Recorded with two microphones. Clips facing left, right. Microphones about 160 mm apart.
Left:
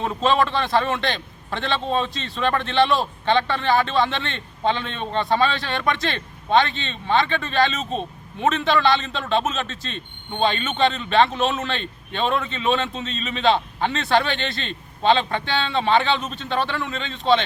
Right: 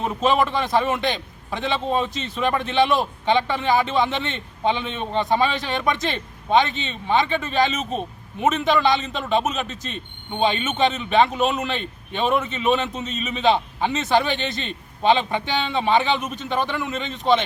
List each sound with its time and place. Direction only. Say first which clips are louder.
0.2 s a man's voice: even; 15° right (ahead or behind)